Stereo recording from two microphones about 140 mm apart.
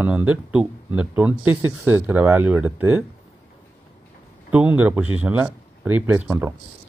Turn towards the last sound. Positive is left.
turn(degrees=-15)  # may be behind; listen again after turning